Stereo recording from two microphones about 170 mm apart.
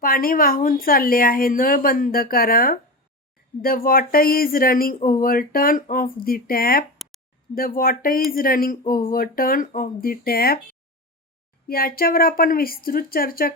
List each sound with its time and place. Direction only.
0.0 s a woman's voice: 60° left (ahead or behind)
11.7 s a woman's voice: 60° left (ahead or behind)